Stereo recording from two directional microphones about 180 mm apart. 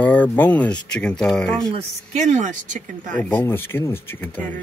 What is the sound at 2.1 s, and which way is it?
Speech, 40° right (ahead or behind).